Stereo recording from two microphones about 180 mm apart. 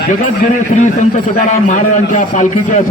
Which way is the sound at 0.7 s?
40° left (ahead or behind).